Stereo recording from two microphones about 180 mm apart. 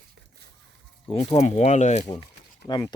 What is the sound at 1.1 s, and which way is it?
Speech, 25° left (ahead or behind).